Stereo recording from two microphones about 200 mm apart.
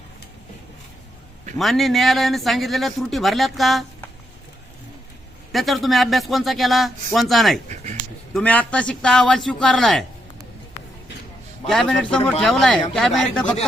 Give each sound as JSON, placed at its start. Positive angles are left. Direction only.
{"t": 1.5, "sound": "a man's voice", "side_deg": 0}
{"t": 5.5, "sound": "a man's voice", "side_deg": 0}
{"t": 11.7, "sound": "a man's voice", "side_deg": 0}